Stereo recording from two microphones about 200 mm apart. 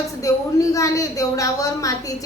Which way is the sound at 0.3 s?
15° left (ahead or behind).